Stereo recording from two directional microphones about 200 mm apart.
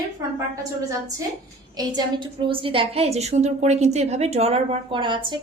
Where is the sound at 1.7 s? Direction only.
20° right (ahead or behind).